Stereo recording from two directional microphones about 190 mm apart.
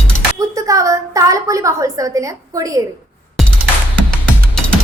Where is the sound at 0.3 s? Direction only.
15° right (ahead or behind).